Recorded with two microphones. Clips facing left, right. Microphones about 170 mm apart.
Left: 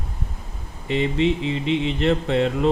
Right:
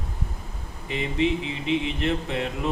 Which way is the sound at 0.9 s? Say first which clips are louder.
Left 4 dB; 65° left (ahead or behind).